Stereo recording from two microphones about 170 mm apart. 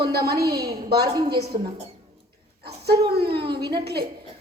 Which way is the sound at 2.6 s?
70° right (ahead or behind).